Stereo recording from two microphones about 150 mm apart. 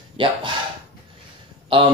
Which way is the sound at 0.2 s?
35° right (ahead or behind).